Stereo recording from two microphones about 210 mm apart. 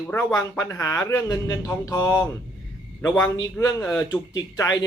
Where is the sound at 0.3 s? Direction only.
15° left (ahead or behind).